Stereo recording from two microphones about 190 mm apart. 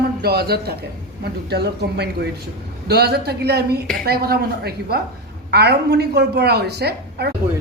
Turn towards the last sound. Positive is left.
turn(degrees=-60)  # may be behind; listen again after turning